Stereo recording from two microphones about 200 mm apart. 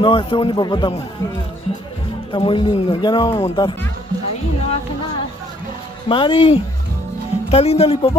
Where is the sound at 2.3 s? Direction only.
25° left (ahead or behind).